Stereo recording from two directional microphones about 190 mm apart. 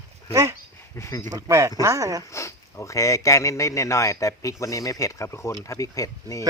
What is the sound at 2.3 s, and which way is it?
Speech, 15° left (ahead or behind).